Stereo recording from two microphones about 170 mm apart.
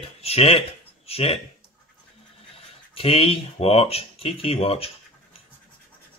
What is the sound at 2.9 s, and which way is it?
Speech, 35° left (ahead or behind).